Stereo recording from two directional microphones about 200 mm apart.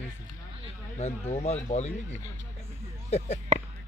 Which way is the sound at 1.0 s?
30° left (ahead or behind).